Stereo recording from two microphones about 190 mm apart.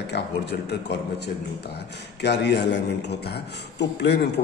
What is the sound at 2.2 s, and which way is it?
A man's voice, 60° left (ahead or behind).